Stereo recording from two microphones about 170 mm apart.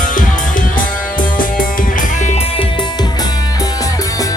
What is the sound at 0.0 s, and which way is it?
Music, 50° left (ahead or behind).